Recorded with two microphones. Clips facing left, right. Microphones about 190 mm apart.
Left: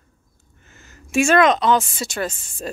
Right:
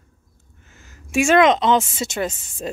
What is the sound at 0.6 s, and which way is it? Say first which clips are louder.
A woman's voice: left 1 dB; 10° right (ahead or behind).